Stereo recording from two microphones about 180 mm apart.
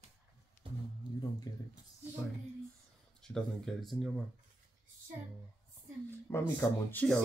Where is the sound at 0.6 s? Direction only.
30° right (ahead or behind).